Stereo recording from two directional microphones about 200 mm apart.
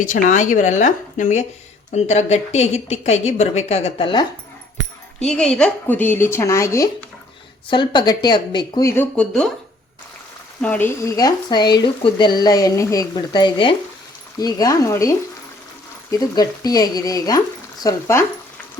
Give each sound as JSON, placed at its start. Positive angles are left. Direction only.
{"t": 0.0, "sound": "speech", "side_deg": 40}
{"t": 5.2, "sound": "speech", "side_deg": 5}
{"t": 10.6, "sound": "speech", "side_deg": 10}
{"t": 16.1, "sound": "speech", "side_deg": 20}